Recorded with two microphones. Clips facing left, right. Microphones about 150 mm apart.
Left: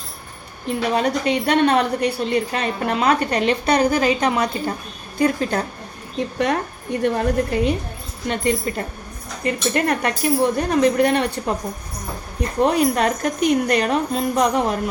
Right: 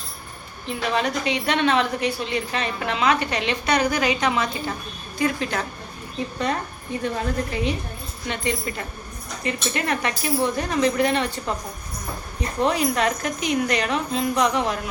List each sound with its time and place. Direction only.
0.7 s a woman's voice: 45° left (ahead or behind)
7.0 s a woman's voice: 55° left (ahead or behind)
12.6 s a woman's voice: 50° left (ahead or behind)